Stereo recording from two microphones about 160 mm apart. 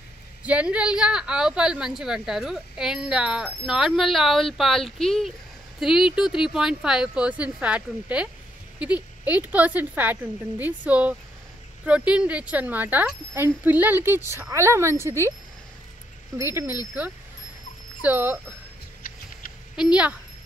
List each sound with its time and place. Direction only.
0.4 s a woman's voice: 10° right (ahead or behind)
16.3 s speech: 15° right (ahead or behind)
18.0 s speech: 10° right (ahead or behind)
19.7 s speech: 5° right (ahead or behind)